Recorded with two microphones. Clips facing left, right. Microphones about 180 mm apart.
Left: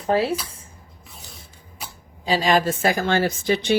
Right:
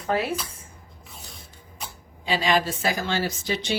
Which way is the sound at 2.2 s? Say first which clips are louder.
Left 4 dB; 40° left (ahead or behind).